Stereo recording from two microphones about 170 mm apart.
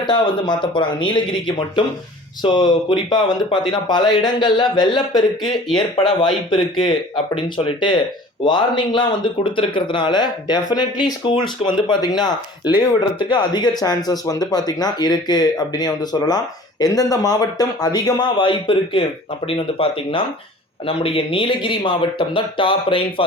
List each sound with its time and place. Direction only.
0.0 s speech: 25° left (ahead or behind)